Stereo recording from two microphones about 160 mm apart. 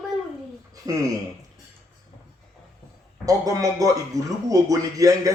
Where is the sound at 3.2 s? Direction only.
20° right (ahead or behind).